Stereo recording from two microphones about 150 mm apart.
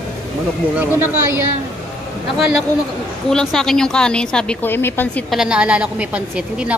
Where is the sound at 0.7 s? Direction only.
15° right (ahead or behind).